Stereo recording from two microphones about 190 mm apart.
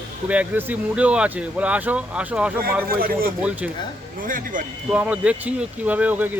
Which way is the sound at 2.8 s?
50° right (ahead or behind).